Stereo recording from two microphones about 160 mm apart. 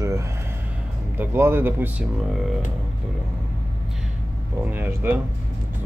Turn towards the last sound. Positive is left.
turn(degrees=-10)  # may be behind; listen again after turning